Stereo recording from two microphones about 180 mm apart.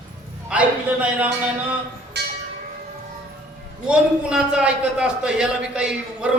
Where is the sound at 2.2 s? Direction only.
65° right (ahead or behind).